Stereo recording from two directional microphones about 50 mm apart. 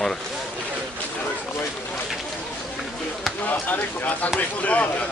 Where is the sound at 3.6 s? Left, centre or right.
Left.